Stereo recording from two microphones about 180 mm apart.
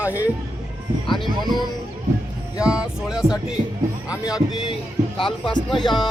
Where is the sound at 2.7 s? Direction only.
5° right (ahead or behind).